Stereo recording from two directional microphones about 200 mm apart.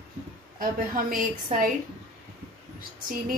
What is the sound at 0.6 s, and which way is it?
A woman's voice, 45° right (ahead or behind).